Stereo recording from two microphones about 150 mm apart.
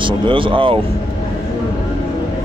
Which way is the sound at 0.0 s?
35° right (ahead or behind).